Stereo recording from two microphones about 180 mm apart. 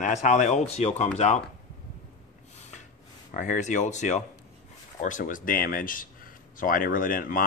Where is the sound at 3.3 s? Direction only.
45° left (ahead or behind).